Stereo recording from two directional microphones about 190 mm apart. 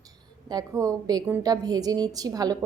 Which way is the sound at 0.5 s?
15° right (ahead or behind).